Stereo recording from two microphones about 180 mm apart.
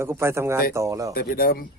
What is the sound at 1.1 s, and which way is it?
Speech, 55° left (ahead or behind).